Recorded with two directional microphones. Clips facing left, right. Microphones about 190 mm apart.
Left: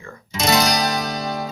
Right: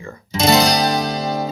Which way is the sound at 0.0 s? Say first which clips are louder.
Right 5 dB; 30° right (ahead or behind).